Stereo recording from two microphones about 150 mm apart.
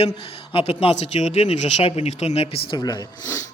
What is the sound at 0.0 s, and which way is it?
A man's voice, 40° left (ahead or behind).